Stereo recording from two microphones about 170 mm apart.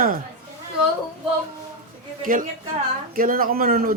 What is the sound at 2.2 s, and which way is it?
Speech, 55° right (ahead or behind).